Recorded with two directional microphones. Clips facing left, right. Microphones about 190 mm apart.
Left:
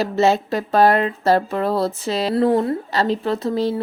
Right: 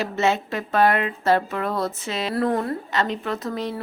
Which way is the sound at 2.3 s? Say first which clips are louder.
Left 5 dB; 25° left (ahead or behind).